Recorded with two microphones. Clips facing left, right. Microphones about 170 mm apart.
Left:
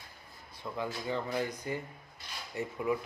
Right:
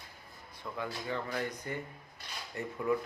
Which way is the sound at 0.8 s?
20° left (ahead or behind).